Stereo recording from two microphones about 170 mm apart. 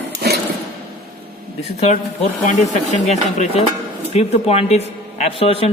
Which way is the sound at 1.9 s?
40° left (ahead or behind).